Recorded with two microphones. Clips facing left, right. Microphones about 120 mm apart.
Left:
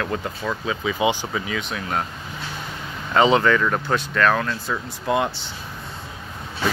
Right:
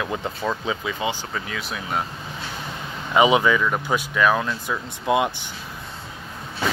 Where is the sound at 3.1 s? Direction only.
10° right (ahead or behind).